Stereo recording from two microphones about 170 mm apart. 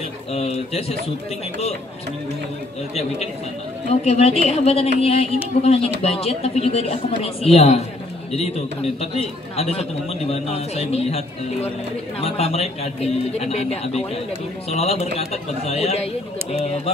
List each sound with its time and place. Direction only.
0.3 s a man's voice: 35° left (ahead or behind)
2.9 s a man's voice: 40° left (ahead or behind)
9.0 s a man's voice: 35° left (ahead or behind)